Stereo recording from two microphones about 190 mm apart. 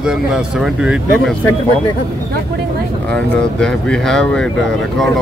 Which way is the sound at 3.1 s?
5° left (ahead or behind).